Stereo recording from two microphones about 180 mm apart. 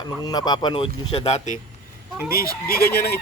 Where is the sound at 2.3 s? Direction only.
55° left (ahead or behind).